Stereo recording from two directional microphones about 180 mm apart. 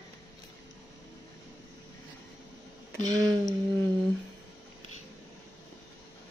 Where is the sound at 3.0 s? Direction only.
20° right (ahead or behind).